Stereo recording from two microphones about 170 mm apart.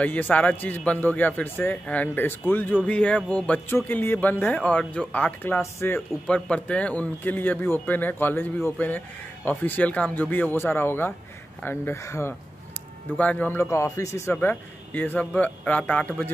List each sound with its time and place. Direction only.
0.0 s a man's voice: 10° left (ahead or behind)